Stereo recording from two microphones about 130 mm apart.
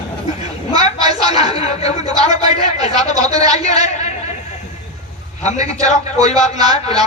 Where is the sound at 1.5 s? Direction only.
55° left (ahead or behind).